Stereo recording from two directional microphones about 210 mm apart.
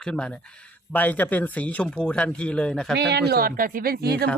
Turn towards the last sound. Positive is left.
turn(degrees=-50)  # may be behind; listen again after turning